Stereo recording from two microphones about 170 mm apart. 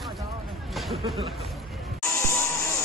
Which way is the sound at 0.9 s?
30° right (ahead or behind).